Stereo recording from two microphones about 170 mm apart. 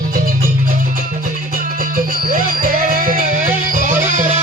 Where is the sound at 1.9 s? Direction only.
55° right (ahead or behind).